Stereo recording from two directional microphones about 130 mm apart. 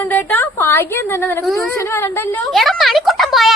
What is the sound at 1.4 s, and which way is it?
Speech, centre (ahead or behind).